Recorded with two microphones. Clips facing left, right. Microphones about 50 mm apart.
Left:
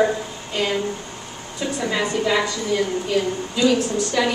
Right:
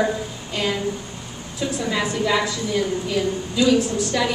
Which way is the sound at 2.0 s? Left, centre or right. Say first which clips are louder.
Left 1 dB; centre.